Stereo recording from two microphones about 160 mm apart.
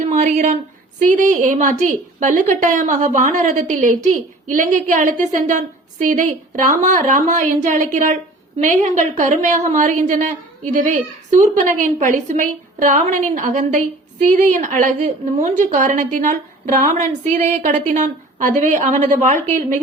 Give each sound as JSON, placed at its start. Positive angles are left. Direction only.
{"t": 0.1, "sound": "a woman's voice", "side_deg": -50}